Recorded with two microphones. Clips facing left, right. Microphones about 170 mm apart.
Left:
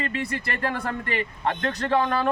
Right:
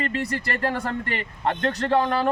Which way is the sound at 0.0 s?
40° right (ahead or behind).